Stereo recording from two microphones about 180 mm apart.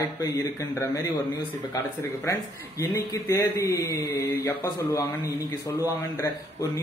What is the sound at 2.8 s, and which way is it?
Speech, 15° left (ahead or behind).